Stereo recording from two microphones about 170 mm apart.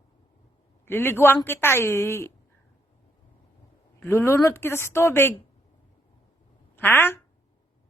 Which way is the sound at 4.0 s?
15° left (ahead or behind).